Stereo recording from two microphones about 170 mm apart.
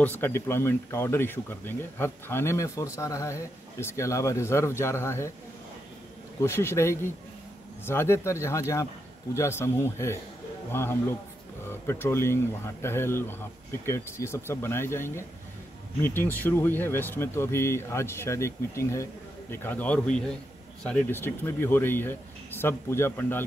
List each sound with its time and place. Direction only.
0.0 s speech: 10° left (ahead or behind)
6.4 s speech: 15° left (ahead or behind)